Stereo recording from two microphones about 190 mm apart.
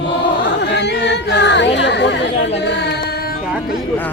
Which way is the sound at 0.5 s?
65° left (ahead or behind).